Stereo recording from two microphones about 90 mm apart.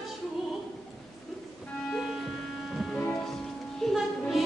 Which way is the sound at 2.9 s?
10° left (ahead or behind).